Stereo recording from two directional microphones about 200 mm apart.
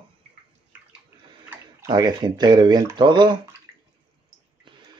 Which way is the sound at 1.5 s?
15° right (ahead or behind).